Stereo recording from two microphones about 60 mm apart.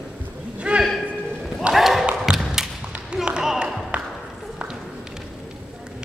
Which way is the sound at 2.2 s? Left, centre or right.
Centre.